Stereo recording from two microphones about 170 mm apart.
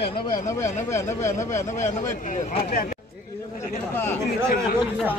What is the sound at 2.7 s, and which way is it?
Speech, 55° left (ahead or behind).